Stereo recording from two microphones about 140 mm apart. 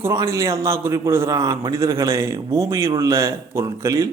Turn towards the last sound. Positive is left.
turn(degrees=-25)  # may be behind; listen again after turning